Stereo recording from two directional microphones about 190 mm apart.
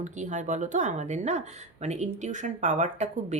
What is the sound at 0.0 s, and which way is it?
Speech, 40° right (ahead or behind).